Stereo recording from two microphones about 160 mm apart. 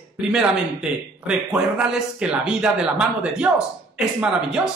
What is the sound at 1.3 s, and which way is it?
Speech, 5° right (ahead or behind).